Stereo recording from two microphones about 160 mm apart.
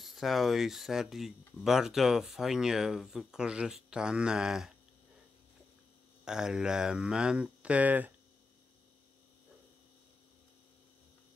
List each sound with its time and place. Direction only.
0.0 s speech: centre (ahead or behind)
6.2 s speech: 5° right (ahead or behind)